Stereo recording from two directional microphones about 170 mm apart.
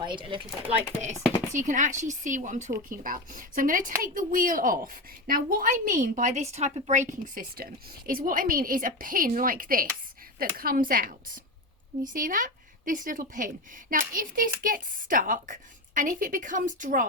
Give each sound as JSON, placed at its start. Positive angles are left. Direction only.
{"t": 0.0, "sound": "speech", "side_deg": -30}
{"t": 1.5, "sound": "a woman's voice", "side_deg": -50}